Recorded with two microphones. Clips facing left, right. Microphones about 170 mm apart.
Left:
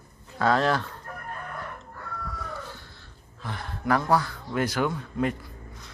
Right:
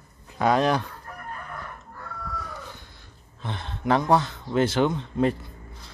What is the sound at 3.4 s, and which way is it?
Speech, 25° right (ahead or behind).